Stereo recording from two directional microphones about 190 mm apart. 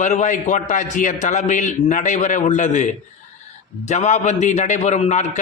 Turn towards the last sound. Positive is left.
turn(degrees=40)  # may be behind; listen again after turning